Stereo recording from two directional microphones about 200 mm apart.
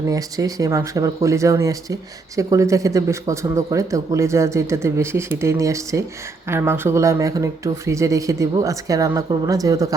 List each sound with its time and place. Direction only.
0.1 s speech: 15° right (ahead or behind)